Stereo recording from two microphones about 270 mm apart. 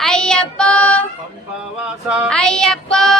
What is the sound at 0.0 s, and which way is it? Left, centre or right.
Child singing, centre.